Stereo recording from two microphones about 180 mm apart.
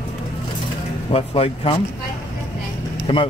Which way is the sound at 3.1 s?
25° left (ahead or behind).